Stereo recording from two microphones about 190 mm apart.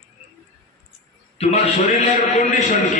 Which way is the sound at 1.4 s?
35° left (ahead or behind).